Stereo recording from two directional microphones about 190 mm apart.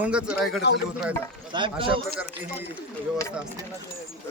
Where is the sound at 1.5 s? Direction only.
25° right (ahead or behind).